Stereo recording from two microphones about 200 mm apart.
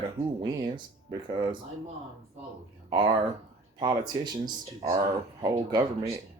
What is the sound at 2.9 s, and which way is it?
Speech, 20° right (ahead or behind).